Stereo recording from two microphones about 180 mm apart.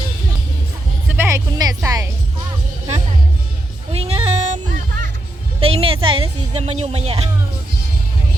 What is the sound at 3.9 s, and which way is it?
Music, 35° right (ahead or behind).